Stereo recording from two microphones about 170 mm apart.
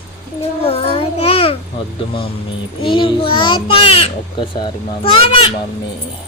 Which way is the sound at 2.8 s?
30° left (ahead or behind).